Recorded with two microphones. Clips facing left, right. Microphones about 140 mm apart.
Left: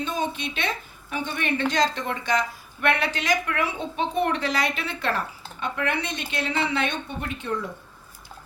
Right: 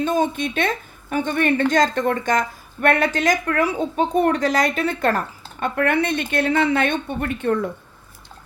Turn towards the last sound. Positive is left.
turn(degrees=-55)  # may be behind; listen again after turning